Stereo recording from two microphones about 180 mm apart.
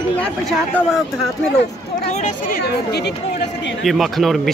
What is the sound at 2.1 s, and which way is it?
Speech, 40° left (ahead or behind).